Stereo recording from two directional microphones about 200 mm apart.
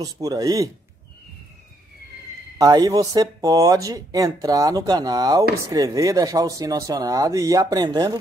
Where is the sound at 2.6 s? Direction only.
20° right (ahead or behind).